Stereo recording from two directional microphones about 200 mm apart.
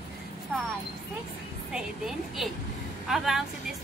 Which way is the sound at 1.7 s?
5° right (ahead or behind).